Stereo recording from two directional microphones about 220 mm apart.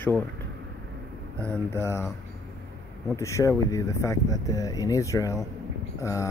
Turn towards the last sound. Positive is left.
turn(degrees=15)  # may be behind; listen again after turning